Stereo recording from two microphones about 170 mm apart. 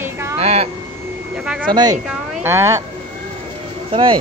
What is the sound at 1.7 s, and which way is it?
Speech, 25° right (ahead or behind).